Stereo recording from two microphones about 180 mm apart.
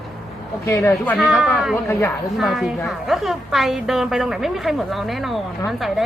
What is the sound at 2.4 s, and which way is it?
A woman's voice, centre (ahead or behind).